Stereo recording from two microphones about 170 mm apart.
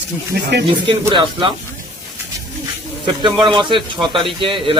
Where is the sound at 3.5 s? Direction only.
30° right (ahead or behind).